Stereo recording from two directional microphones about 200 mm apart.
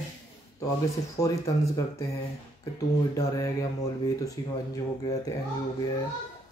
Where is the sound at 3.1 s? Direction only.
15° left (ahead or behind).